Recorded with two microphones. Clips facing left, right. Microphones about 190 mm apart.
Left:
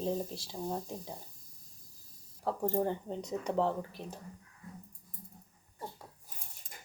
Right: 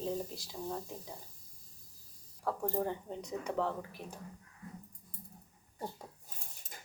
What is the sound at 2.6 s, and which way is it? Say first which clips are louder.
Speech: left 5 dB; 30° left (ahead or behind).